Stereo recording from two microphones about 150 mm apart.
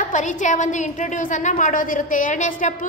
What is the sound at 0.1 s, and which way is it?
A woman's voice, 55° left (ahead or behind).